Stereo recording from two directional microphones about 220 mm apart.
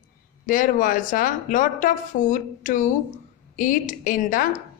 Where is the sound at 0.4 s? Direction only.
35° left (ahead or behind).